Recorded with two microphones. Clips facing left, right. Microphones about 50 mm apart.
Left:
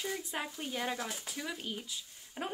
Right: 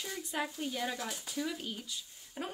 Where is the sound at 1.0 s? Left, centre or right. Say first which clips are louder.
Right 2 dB; centre.